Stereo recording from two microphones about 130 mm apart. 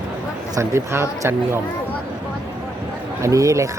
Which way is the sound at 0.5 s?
20° right (ahead or behind).